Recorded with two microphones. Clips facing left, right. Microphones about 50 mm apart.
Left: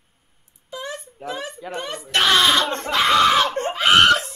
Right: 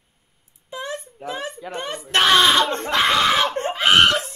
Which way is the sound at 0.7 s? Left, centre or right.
Right.